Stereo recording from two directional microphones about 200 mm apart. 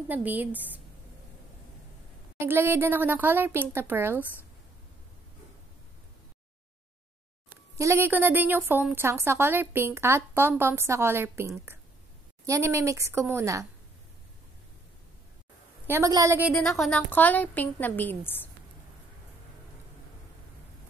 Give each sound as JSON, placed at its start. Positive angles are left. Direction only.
{"t": 0.1, "sound": "a woman's voice", "side_deg": -10}
{"t": 2.3, "sound": "a woman's voice", "side_deg": -10}
{"t": 7.7, "sound": "a woman's voice", "side_deg": -15}
{"t": 15.9, "sound": "a woman's voice", "side_deg": -15}
{"t": 16.6, "sound": "a woman's voice", "side_deg": 0}